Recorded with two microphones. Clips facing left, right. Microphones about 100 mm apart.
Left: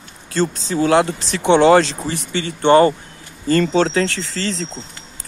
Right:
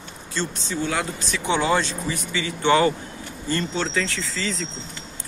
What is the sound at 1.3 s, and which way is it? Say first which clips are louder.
Speech: left 10 dB; 65° left (ahead or behind).